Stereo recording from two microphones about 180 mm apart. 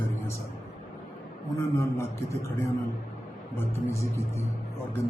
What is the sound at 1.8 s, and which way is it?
A man's voice, 15° left (ahead or behind).